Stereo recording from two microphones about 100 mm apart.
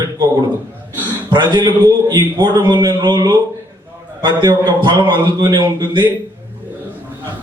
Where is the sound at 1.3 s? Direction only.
50° right (ahead or behind).